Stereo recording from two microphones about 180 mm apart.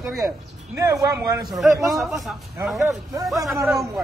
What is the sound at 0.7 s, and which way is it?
Speech, 15° right (ahead or behind).